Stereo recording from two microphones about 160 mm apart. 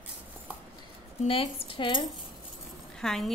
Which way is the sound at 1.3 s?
35° left (ahead or behind).